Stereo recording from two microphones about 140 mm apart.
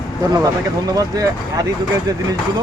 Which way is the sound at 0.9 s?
25° right (ahead or behind).